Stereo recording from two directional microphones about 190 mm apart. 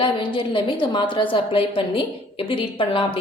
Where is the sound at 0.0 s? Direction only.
25° left (ahead or behind).